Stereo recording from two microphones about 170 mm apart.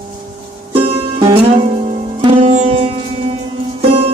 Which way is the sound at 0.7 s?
35° right (ahead or behind).